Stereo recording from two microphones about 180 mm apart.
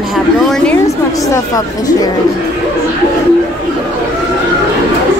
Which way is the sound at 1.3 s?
20° left (ahead or behind).